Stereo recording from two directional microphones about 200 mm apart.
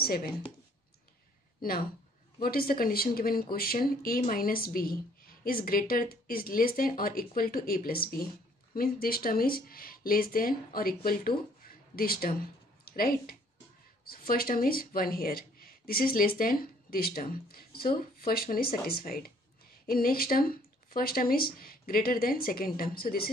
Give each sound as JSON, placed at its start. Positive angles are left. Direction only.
{"t": 0.0, "sound": "speech", "side_deg": 50}
{"t": 1.6, "sound": "speech", "side_deg": 45}